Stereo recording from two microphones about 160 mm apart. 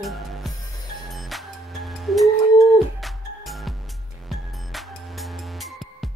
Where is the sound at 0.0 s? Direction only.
Centre (ahead or behind).